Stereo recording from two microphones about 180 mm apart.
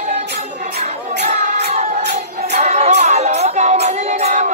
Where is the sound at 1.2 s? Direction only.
40° right (ahead or behind).